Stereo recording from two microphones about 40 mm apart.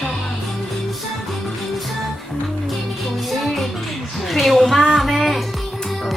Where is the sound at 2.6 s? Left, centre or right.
Centre.